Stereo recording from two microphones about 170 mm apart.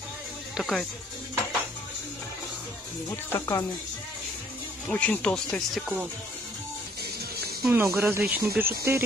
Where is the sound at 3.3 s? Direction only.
20° left (ahead or behind).